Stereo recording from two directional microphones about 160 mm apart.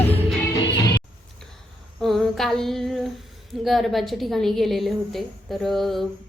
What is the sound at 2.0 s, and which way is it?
Female singing, centre (ahead or behind).